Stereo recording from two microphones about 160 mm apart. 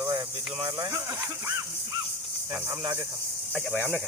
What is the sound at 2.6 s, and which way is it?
Speech, 20° right (ahead or behind).